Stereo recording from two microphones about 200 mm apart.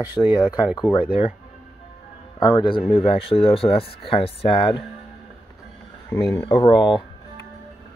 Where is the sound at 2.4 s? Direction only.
25° left (ahead or behind).